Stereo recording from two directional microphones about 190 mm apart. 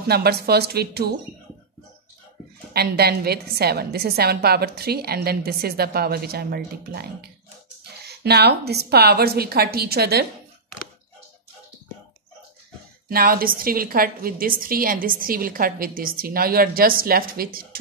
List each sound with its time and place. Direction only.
0.0 s a woman's voice: 55° right (ahead or behind)
2.7 s a woman's voice: 55° right (ahead or behind)
13.1 s a woman's voice: 50° right (ahead or behind)